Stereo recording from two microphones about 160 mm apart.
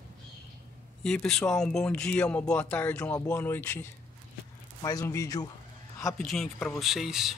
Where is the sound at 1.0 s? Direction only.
5° left (ahead or behind).